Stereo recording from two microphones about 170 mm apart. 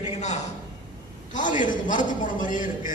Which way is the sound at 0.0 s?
45° left (ahead or behind).